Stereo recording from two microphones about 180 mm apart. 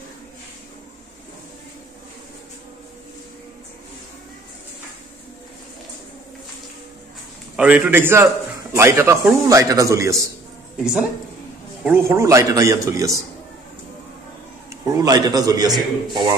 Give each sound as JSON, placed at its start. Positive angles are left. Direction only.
{"t": 7.5, "sound": "a man's voice", "side_deg": -5}
{"t": 10.8, "sound": "a man's voice", "side_deg": -5}
{"t": 14.7, "sound": "a man's voice", "side_deg": -20}